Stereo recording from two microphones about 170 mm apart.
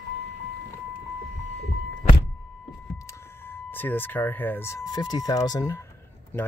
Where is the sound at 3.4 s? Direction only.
10° left (ahead or behind).